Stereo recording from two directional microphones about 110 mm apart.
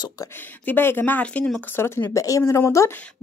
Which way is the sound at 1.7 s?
20° left (ahead or behind).